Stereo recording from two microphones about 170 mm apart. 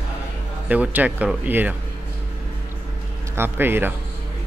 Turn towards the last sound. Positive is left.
turn(degrees=-10)  # may be behind; listen again after turning